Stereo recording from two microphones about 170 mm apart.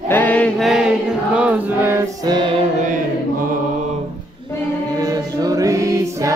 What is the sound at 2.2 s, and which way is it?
Music, 30° right (ahead or behind).